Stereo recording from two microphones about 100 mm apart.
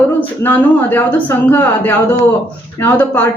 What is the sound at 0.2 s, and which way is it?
A man's voice, 20° left (ahead or behind).